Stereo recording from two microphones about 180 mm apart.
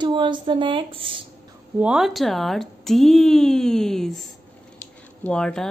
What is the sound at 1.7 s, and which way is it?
Speech, 5° right (ahead or behind).